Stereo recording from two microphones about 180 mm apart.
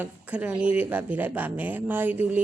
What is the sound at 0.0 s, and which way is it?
Speech, 10° right (ahead or behind).